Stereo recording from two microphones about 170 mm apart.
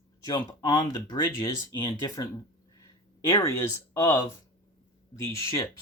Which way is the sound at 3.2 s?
15° left (ahead or behind).